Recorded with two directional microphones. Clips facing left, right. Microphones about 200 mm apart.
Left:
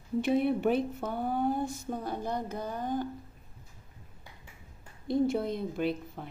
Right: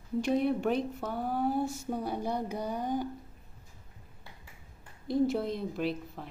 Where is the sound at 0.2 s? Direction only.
5° left (ahead or behind); by 3.1 s 15° right (ahead or behind).